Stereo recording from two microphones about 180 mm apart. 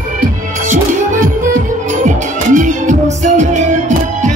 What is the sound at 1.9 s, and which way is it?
Music, 45° right (ahead or behind).